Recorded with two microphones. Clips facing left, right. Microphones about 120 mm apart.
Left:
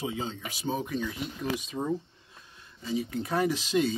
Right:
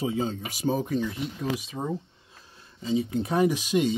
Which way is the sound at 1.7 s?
25° right (ahead or behind).